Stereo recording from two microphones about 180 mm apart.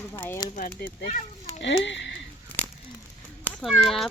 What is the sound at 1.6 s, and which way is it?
Speech, 80° left.